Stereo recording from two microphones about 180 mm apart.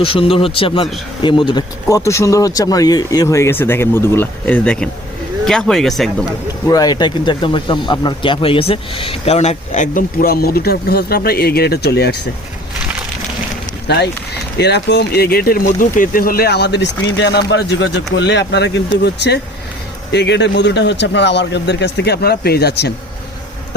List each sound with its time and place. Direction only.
0.0 s speech: 30° left (ahead or behind); by 6.2 s centre (ahead or behind)
6.7 s speech: 20° left (ahead or behind); by 12.3 s 65° left (ahead or behind)
13.8 s speech: 70° left (ahead or behind)